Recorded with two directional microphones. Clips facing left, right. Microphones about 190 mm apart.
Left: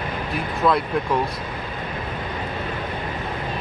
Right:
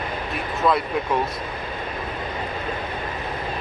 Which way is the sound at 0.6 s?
Centre (ahead or behind).